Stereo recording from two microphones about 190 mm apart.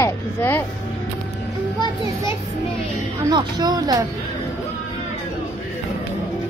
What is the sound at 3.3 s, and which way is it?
Speech, 20° right (ahead or behind).